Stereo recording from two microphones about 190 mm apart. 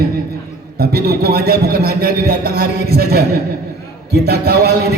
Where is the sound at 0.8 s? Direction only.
55° right (ahead or behind).